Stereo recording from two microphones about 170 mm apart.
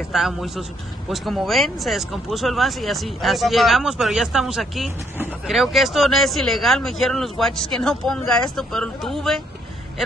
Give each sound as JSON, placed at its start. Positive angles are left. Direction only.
{"t": 0.1, "sound": "speech", "side_deg": 0}